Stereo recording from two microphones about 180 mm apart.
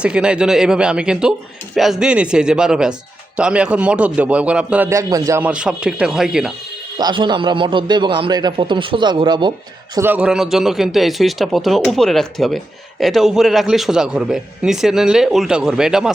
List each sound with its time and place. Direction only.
0.0 s a man's voice: 5° right (ahead or behind)
7.0 s a man's voice: 25° right (ahead or behind)
9.9 s a man's voice: 10° right (ahead or behind)